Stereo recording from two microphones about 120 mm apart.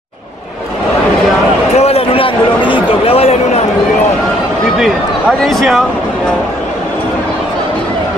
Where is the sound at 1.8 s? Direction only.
60° left (ahead or behind).